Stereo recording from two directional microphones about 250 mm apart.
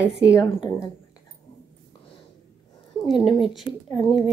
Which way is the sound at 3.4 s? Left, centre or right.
Centre.